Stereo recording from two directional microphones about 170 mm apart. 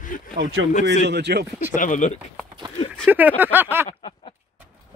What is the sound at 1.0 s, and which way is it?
Speech, 85° right.